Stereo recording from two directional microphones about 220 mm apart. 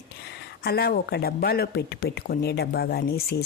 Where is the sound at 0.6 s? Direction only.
45° left (ahead or behind).